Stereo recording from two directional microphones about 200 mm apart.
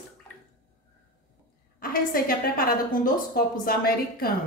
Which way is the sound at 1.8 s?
45° left (ahead or behind).